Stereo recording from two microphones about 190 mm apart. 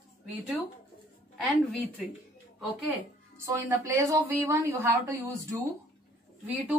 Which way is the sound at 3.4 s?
15° right (ahead or behind).